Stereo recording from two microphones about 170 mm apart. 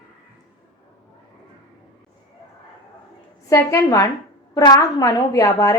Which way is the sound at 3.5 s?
20° left (ahead or behind).